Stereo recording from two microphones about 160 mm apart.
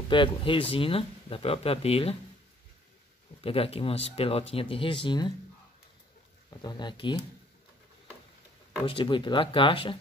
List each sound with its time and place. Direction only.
0.1 s speech: 30° left (ahead or behind)
3.3 s speech: 35° left (ahead or behind)
6.6 s speech: 25° left (ahead or behind)
8.8 s speech: 30° left (ahead or behind)